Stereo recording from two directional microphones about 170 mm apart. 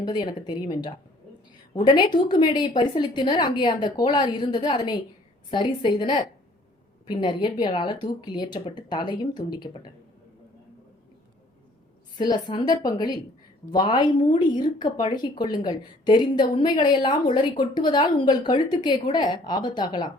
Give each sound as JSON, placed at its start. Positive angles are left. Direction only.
{"t": 0.0, "sound": "speech", "side_deg": 25}
{"t": 12.1, "sound": "speech", "side_deg": 25}